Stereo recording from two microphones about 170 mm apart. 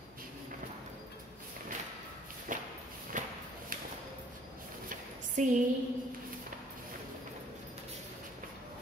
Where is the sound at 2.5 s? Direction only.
50° right (ahead or behind).